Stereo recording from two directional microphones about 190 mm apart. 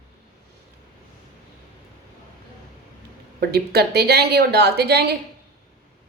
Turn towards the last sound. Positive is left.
turn(degrees=-60)  # may be behind; listen again after turning